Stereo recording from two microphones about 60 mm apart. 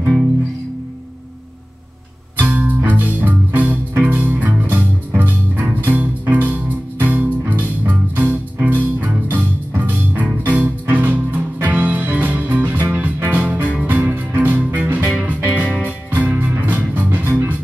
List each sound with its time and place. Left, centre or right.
2.3 s music: right